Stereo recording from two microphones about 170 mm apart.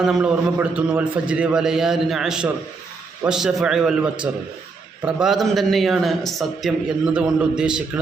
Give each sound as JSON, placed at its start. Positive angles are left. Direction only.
{"t": 0.0, "sound": "a man's voice", "side_deg": -5}
{"t": 5.0, "sound": "a man's voice", "side_deg": 0}